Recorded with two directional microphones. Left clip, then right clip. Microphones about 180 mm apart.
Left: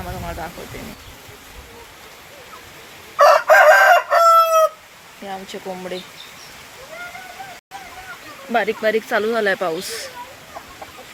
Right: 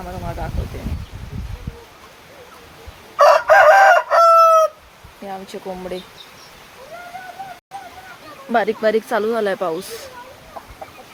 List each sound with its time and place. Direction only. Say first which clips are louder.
0.0 s a sound: even; centre (ahead or behind)
3.2 s chicken: even; centre (ahead or behind)
5.2 s speech: even; 5° right (ahead or behind)
8.5 s speech: right 1 dB; 25° right (ahead or behind)
9.1 s speech: left 1 dB; 10° right (ahead or behind)